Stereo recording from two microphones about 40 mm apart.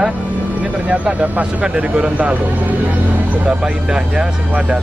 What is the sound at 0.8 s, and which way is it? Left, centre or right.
Speech, right.